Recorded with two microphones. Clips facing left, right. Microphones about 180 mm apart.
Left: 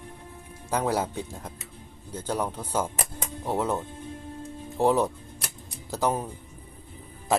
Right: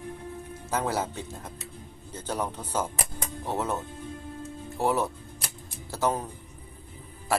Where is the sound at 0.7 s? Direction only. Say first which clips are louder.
Left 2 dB; 15° left (ahead or behind).